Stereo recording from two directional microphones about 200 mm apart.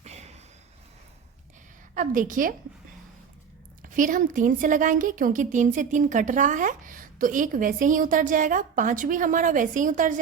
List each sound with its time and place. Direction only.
0.0 s a sound: 35° right (ahead or behind)
2.0 s a woman's voice: 40° right (ahead or behind)
3.8 s a woman's voice: 40° right (ahead or behind)